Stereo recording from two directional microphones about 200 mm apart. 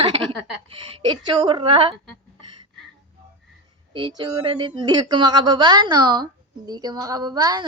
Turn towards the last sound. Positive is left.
turn(degrees=-20)  # may be behind; listen again after turning